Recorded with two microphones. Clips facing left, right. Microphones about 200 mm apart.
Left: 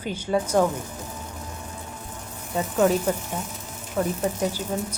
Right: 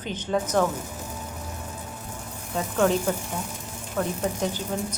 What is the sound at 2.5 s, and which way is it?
Speech, 5° left (ahead or behind).